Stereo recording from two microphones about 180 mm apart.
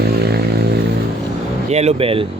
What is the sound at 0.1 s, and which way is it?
Vehicle, 65° right (ahead or behind).